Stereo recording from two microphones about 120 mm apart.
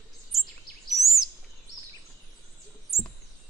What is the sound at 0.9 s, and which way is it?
Bird vocalization, centre (ahead or behind).